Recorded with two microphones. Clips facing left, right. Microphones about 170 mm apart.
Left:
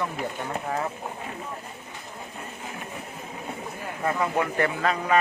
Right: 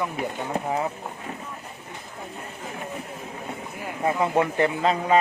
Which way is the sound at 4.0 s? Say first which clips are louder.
Right 3 dB; 20° right (ahead or behind).